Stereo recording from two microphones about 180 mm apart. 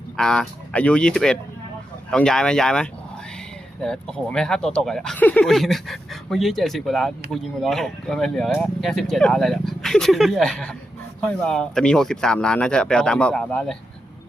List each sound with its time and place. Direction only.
0.2 s speech: 5° left (ahead or behind)